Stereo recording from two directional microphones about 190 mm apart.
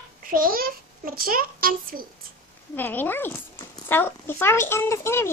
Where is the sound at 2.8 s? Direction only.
10° left (ahead or behind).